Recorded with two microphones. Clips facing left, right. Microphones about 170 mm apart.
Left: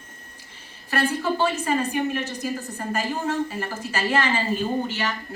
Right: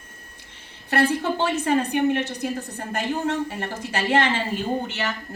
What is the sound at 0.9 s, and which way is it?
A woman's voice, 65° right (ahead or behind).